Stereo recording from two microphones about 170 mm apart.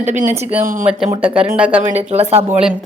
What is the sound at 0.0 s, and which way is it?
Speech, 45° right (ahead or behind).